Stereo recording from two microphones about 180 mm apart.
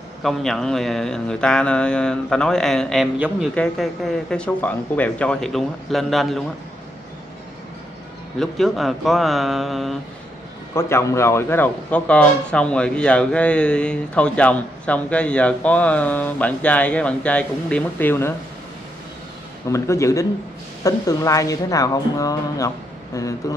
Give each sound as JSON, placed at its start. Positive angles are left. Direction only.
{"t": 0.2, "sound": "speech", "side_deg": 0}
{"t": 8.4, "sound": "speech", "side_deg": 0}
{"t": 10.7, "sound": "speech", "side_deg": 15}
{"t": 19.7, "sound": "speech", "side_deg": 15}